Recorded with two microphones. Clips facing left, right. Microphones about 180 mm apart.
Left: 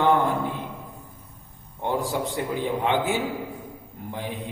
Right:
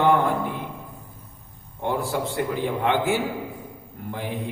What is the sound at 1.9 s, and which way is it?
A man's voice, 15° left (ahead or behind).